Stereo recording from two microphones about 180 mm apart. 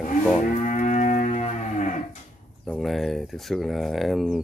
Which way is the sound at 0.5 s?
40° left (ahead or behind).